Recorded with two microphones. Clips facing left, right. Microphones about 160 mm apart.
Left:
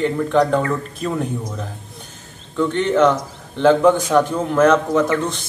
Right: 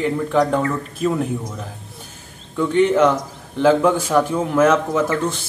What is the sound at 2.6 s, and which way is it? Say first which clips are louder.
A man's voice: right 1 dB; 10° right (ahead or behind).